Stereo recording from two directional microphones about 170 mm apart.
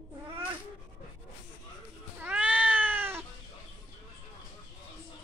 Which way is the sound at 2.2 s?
10° right (ahead or behind).